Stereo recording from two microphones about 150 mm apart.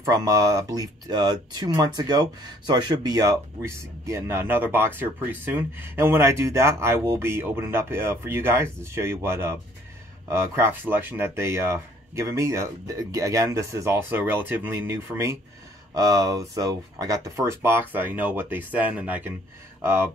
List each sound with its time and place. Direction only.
0.1 s speech: 25° right (ahead or behind)